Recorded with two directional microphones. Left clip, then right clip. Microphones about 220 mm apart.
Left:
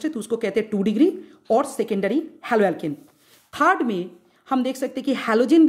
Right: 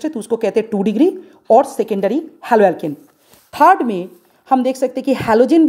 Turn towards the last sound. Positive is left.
turn(degrees=-15)  # may be behind; listen again after turning